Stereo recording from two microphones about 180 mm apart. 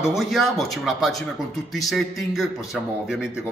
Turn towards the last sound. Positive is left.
turn(degrees=-5)  # may be behind; listen again after turning